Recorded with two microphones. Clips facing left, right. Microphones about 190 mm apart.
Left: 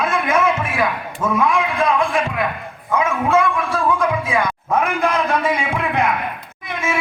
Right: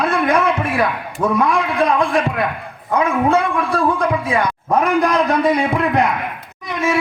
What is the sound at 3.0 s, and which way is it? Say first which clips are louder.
Speech: right 2 dB; 35° right (ahead or behind).